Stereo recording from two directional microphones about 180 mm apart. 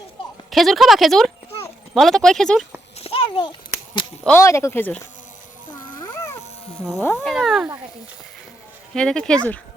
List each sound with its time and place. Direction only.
0.5 s speech: centre (ahead or behind)
3.0 s a sound: 30° left (ahead or behind)
4.4 s speech: 15° left (ahead or behind)
6.0 s cat: 20° left (ahead or behind)
7.0 s speech: 15° left (ahead or behind)
7.3 s speech: centre (ahead or behind)
9.0 s speech: 5° left (ahead or behind)